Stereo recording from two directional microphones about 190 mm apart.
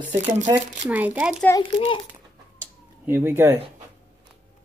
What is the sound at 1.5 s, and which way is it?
Speech, 20° left (ahead or behind).